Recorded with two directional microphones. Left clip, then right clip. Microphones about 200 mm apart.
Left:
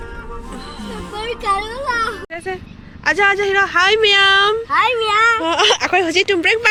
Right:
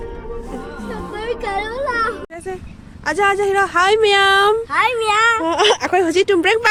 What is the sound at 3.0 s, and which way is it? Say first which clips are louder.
A woman's voice: left 2 dB; 15° right (ahead or behind).